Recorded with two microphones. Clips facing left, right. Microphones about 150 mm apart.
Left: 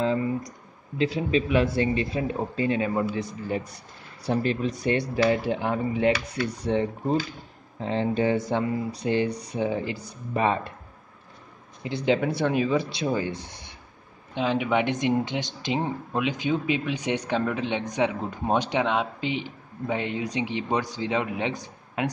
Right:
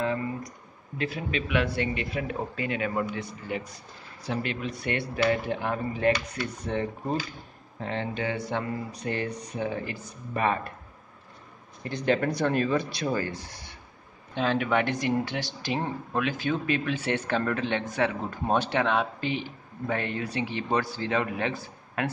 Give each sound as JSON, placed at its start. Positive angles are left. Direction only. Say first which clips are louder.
{"t": 0.9, "sound": "speech", "louder": "left 7 dB", "side_deg": 25}
{"t": 3.2, "sound": "speech", "louder": "left 4 dB", "side_deg": 40}
{"t": 6.1, "sound": "speech", "louder": "left 4 dB", "side_deg": 10}
{"t": 6.5, "sound": "speech", "louder": "left 5 dB", "side_deg": 30}
{"t": 11.8, "sound": "speech", "louder": "left 2 dB", "side_deg": 10}
{"t": 12.9, "sound": "speech", "louder": "left 2 dB", "side_deg": 20}